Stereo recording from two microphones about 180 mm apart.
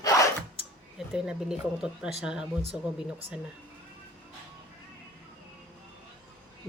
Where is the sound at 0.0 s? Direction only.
20° left (ahead or behind).